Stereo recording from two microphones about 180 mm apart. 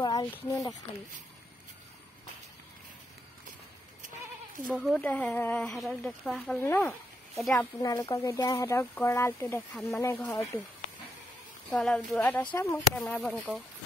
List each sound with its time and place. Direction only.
0.0 s a sound: 20° left (ahead or behind)
0.3 s speech: 10° left (ahead or behind)
4.6 s speech: centre (ahead or behind)
6.6 s speech: 10° left (ahead or behind)
11.7 s speech: centre (ahead or behind)
12.4 s speech: 15° left (ahead or behind)
13.0 s speech: centre (ahead or behind)